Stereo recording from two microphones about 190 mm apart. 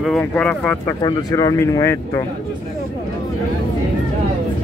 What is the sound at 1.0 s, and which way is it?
Speech, 20° left (ahead or behind).